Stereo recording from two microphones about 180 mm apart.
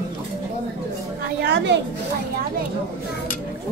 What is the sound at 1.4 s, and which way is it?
Speech, 75° right (ahead or behind).